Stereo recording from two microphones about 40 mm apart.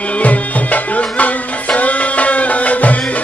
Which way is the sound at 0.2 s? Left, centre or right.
Left.